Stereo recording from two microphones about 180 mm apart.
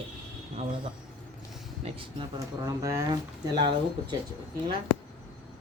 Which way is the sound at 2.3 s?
20° right (ahead or behind).